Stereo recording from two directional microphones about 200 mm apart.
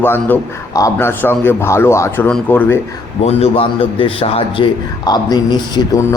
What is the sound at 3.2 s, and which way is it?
Speech, 30° left (ahead or behind).